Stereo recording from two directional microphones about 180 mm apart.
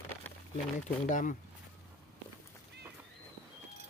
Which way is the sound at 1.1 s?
45° left (ahead or behind).